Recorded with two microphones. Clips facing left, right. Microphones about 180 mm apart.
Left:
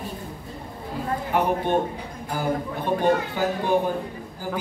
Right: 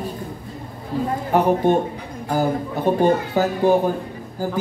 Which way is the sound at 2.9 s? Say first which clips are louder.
Right 4 dB; 45° right (ahead or behind).